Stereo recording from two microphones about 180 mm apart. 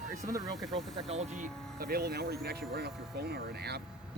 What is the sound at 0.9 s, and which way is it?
Speech, 35° right (ahead or behind).